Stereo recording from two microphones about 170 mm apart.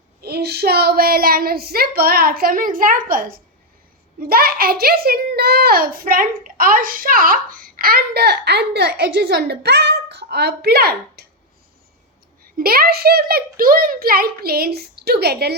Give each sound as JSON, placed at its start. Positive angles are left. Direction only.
{"t": 0.2, "sound": "a woman's voice", "side_deg": -65}
{"t": 12.5, "sound": "a woman's voice", "side_deg": -60}